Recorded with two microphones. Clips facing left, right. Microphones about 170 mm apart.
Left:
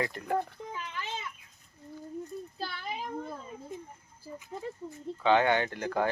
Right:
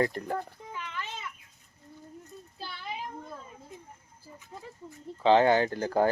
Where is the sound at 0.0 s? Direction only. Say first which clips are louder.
Right 5 dB; 40° right (ahead or behind).